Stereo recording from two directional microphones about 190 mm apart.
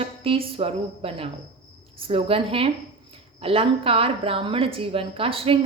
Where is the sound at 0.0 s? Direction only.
30° right (ahead or behind).